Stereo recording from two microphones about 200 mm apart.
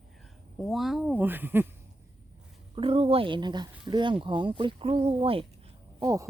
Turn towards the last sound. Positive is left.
turn(degrees=-15)  # may be behind; listen again after turning